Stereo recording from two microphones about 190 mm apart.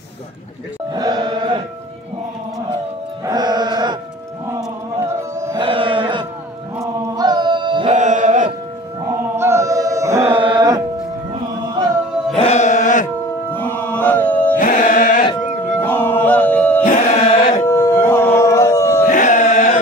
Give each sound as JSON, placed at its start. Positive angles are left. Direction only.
{"t": 0.9, "sound": "music", "side_deg": -20}
{"t": 3.3, "sound": "music", "side_deg": -20}
{"t": 4.6, "sound": "a sound", "side_deg": -20}
{"t": 6.8, "sound": "chant", "side_deg": -20}
{"t": 7.9, "sound": "music", "side_deg": -40}
{"t": 9.4, "sound": "chant", "side_deg": -15}
{"t": 10.3, "sound": "music", "side_deg": -25}
{"t": 12.4, "sound": "chant", "side_deg": 35}
{"t": 13.6, "sound": "chant", "side_deg": 10}
{"t": 14.6, "sound": "music", "side_deg": 45}
{"t": 15.8, "sound": "music", "side_deg": 10}
{"t": 16.8, "sound": "music", "side_deg": 40}
{"t": 17.6, "sound": "a sound", "side_deg": 15}
{"t": 19.0, "sound": "chant", "side_deg": 40}